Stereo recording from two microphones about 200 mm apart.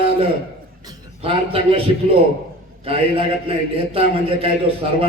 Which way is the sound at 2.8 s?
30° right (ahead or behind).